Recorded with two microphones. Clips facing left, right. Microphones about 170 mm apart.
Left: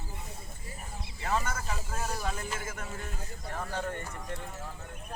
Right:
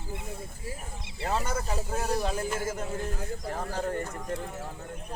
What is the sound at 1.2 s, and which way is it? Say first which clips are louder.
A man's voice: right 2 dB; 35° right (ahead or behind).